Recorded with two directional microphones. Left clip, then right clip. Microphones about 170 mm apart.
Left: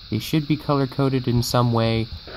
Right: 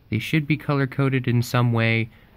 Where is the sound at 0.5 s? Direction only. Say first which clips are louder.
Left 2 dB; 30° right (ahead or behind).